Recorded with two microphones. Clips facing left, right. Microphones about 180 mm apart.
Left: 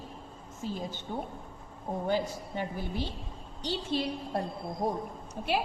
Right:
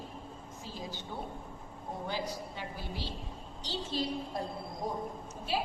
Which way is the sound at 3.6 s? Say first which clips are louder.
Left 4 dB; 65° left (ahead or behind).